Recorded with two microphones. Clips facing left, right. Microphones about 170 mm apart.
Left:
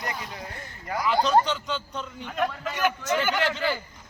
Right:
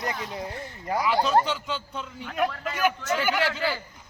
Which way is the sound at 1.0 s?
5° right (ahead or behind).